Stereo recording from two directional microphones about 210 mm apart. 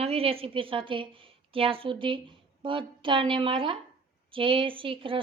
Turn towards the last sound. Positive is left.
turn(degrees=-25)  # may be behind; listen again after turning